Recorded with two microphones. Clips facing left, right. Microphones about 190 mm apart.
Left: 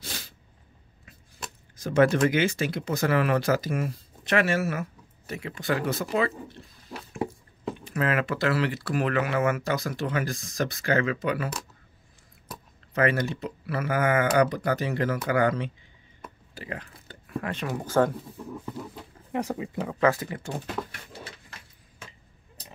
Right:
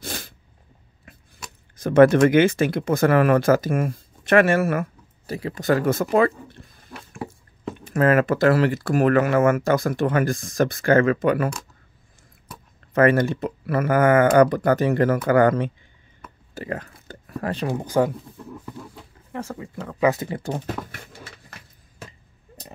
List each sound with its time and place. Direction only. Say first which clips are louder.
0.0 s sneeze: right 7 dB; 50° right (ahead or behind)
1.8 s speech: right 7 dB; 55° right (ahead or behind)
5.2 s speech: right 7 dB; 35° right (ahead or behind); by 11.5 s 50° right (ahead or behind)
12.9 s speech: right 7 dB; 50° right (ahead or behind)
16.5 s a sound: right 8 dB; 45° right (ahead or behind)
17.8 s speech: right 2 dB; 15° right (ahead or behind)
18.5 s a sound: left 1 dB; 5° left (ahead or behind)
19.3 s speech: left 3 dB; 20° left (ahead or behind)
20.0 s speech: right 3 dB; 20° right (ahead or behind)